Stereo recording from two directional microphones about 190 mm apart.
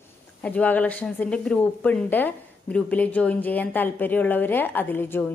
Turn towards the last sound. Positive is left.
turn(degrees=10)  # may be behind; listen again after turning